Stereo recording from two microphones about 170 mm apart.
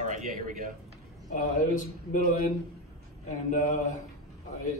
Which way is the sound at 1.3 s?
50° left (ahead or behind).